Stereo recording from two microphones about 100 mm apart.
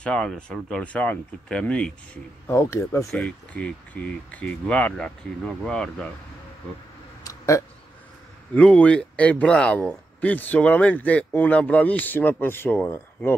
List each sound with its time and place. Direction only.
0.0 s speech: 10° left (ahead or behind)
2.4 s speech: 25° left (ahead or behind)
3.1 s speech: 10° left (ahead or behind)
7.2 s a sound: 30° left (ahead or behind)
8.5 s speech: 10° left (ahead or behind)